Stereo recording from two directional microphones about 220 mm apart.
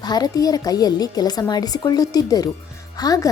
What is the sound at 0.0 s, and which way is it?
Speech, 20° left (ahead or behind).